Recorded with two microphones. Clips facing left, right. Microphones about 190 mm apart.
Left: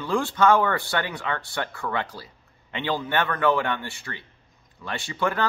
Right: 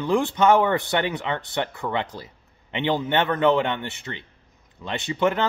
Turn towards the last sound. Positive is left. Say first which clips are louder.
# right 3 dB
turn(degrees=-20)  # may be behind; listen again after turning